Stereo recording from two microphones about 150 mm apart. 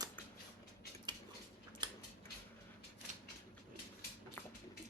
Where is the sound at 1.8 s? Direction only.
30° right (ahead or behind).